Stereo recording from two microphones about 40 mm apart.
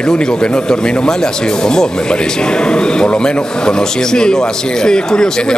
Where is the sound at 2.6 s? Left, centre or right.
Left.